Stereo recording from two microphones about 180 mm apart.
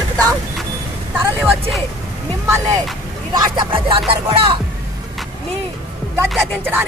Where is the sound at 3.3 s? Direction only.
25° right (ahead or behind).